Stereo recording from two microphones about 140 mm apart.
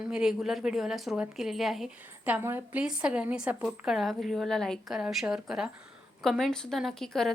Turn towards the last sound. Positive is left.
turn(degrees=5)  # may be behind; listen again after turning